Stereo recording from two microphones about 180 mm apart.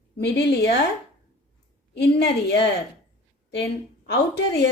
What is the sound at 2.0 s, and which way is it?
A woman's voice, 65° left (ahead or behind).